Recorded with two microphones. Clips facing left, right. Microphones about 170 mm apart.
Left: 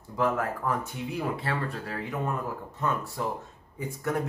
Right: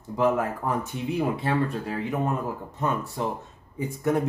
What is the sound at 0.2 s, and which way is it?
Speech, 20° right (ahead or behind).